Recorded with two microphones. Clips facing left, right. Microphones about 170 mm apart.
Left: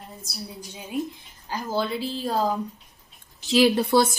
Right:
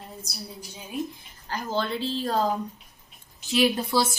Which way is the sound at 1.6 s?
5° left (ahead or behind).